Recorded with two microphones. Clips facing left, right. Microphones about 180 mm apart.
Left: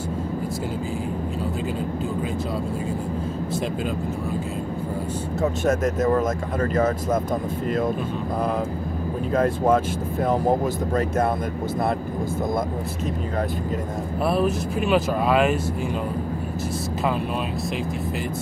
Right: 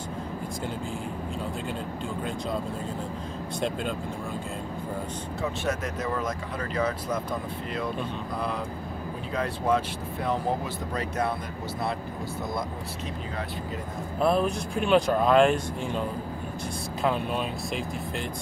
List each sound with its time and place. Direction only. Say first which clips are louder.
5.4 s speech: left 8 dB; 45° left (ahead or behind)
9.3 s speech: left 7 dB; 45° left (ahead or behind)
14.2 s speech: left 2 dB; 5° left (ahead or behind)